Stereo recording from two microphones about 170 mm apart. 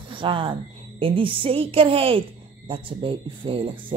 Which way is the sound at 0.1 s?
30° right (ahead or behind).